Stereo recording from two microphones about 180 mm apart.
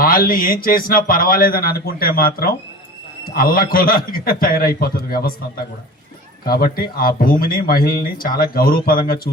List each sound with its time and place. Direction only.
0.0 s speech: 55° left (ahead or behind)
6.4 s speech: 55° left (ahead or behind)